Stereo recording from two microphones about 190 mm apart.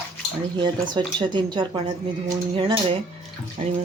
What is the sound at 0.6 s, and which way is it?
Speech, 25° right (ahead or behind).